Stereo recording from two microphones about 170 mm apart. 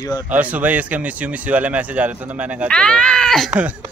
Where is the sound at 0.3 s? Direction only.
10° right (ahead or behind).